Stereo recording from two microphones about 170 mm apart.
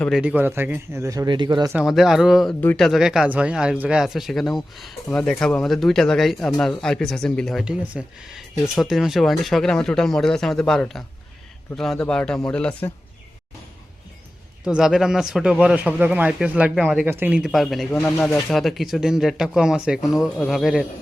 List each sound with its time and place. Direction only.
0.0 s speech: 5° right (ahead or behind); by 1.7 s 25° right (ahead or behind)
1.7 s speech: centre (ahead or behind)
14.6 s speech: 5° right (ahead or behind)